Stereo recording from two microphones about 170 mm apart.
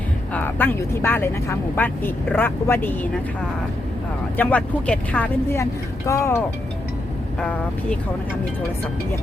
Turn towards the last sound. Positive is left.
turn(degrees=5)  # may be behind; listen again after turning